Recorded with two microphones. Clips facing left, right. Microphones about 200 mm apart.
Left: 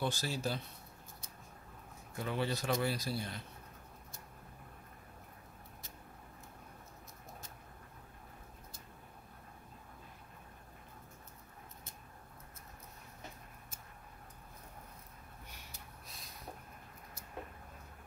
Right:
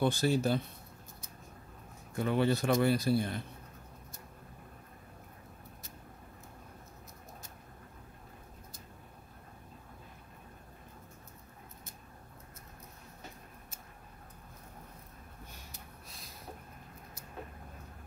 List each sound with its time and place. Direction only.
0.0 s a man's voice: 55° right (ahead or behind)
2.1 s a man's voice: 55° right (ahead or behind)